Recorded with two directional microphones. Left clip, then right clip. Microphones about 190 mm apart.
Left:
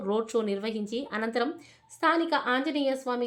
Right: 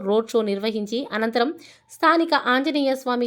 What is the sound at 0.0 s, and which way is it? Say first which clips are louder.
Speech: right 7 dB; 35° right (ahead or behind).